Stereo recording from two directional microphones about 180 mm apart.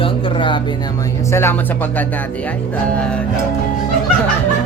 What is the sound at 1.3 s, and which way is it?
Speech, 15° left (ahead or behind).